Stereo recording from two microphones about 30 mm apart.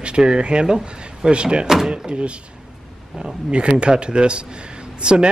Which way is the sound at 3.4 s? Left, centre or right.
Right.